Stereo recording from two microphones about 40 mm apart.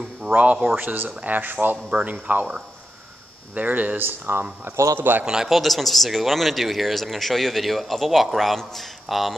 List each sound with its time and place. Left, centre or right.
0.3 s speech: right
0.7 s speech: right
1.0 s speech: right
2.0 s speech: right
3.5 s speech: right
5.2 s a man's voice: centre
5.5 s speech: centre